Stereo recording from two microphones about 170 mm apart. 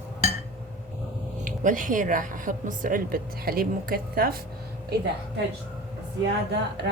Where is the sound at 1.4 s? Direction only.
50° right (ahead or behind).